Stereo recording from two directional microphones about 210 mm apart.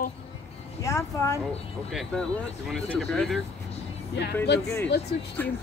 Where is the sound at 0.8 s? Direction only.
15° left (ahead or behind).